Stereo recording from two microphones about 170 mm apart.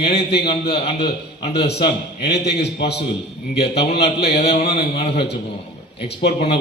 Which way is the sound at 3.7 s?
40° left (ahead or behind).